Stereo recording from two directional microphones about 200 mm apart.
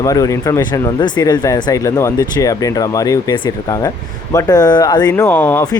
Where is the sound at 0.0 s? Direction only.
15° left (ahead or behind).